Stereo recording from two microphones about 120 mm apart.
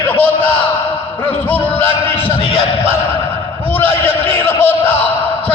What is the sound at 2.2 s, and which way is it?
Speech, 50° left (ahead or behind).